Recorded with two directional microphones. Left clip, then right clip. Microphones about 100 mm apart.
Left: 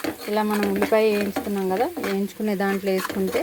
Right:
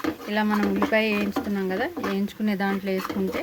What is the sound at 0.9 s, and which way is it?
Speech, 65° left (ahead or behind).